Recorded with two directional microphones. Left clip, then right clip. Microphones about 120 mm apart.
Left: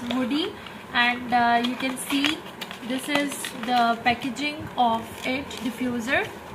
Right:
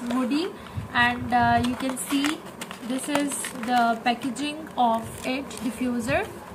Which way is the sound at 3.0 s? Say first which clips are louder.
Left 1 dB; centre (ahead or behind).